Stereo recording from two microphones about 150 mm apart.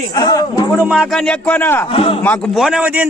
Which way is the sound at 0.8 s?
5° right (ahead or behind).